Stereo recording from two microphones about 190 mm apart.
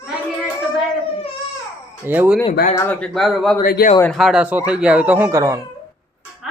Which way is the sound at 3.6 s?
50° left (ahead or behind).